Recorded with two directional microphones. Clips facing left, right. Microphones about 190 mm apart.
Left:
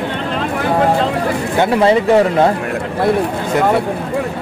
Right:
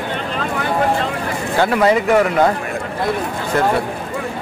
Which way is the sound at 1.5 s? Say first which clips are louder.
Left 2 dB; 30° left (ahead or behind).